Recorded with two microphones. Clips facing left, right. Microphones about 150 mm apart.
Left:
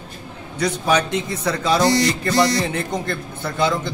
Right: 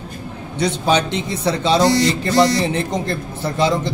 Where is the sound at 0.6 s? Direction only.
25° right (ahead or behind).